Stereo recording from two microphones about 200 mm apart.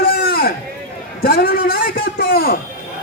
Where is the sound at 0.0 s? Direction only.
50° left (ahead or behind).